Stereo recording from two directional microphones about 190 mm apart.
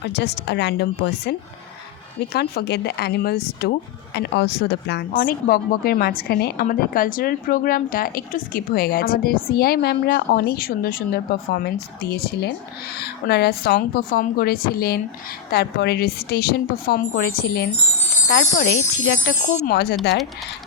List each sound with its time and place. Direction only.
0.0 s a woman's voice: 60° left (ahead or behind)